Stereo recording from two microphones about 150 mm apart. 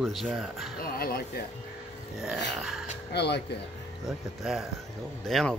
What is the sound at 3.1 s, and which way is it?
Speech, 90° left.